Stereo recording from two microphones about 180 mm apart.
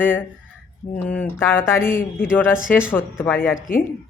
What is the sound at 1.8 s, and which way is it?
Speech, 50° left (ahead or behind).